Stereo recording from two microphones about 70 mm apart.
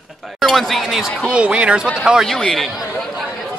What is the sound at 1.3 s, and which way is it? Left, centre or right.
Speech, centre.